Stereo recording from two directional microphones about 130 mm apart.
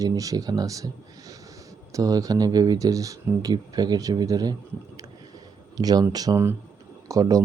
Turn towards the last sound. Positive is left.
turn(degrees=-25)  # may be behind; listen again after turning